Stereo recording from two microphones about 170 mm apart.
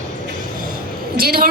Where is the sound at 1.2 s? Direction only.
60° right (ahead or behind).